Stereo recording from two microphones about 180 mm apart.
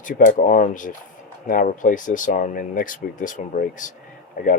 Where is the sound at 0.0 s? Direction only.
45° left (ahead or behind).